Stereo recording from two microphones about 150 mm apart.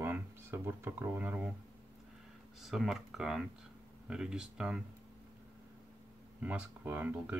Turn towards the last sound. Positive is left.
turn(degrees=-10)  # may be behind; listen again after turning